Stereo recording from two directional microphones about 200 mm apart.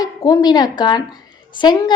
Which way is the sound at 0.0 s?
20° left (ahead or behind).